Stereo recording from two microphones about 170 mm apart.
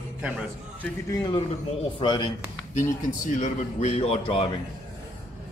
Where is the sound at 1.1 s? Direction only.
25° left (ahead or behind).